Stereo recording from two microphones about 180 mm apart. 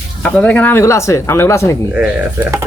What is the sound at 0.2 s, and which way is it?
Speech, 5° left (ahead or behind).